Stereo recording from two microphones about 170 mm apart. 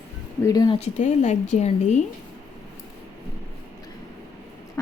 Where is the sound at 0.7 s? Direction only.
45° left (ahead or behind).